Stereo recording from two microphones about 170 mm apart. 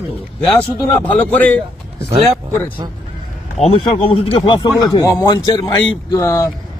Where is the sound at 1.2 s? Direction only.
10° left (ahead or behind).